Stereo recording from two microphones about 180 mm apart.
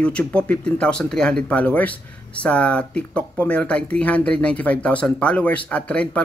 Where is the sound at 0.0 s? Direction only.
5° left (ahead or behind).